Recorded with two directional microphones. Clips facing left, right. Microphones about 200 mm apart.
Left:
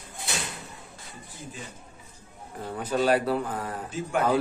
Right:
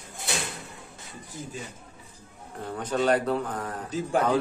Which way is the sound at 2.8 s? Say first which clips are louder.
Even; 5° left (ahead or behind).